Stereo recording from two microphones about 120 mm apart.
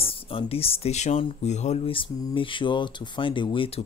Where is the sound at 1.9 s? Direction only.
45° left (ahead or behind).